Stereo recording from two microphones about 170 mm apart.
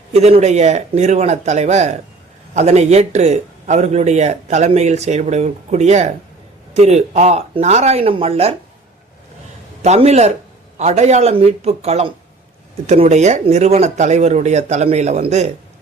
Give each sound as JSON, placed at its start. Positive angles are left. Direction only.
{"t": 0.1, "sound": "speech", "side_deg": -40}
{"t": 9.8, "sound": "speech", "side_deg": -40}